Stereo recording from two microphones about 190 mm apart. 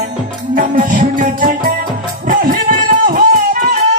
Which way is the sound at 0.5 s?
45° right (ahead or behind).